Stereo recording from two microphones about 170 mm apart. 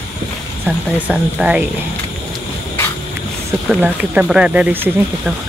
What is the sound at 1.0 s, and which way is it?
Speech, 5° right (ahead or behind).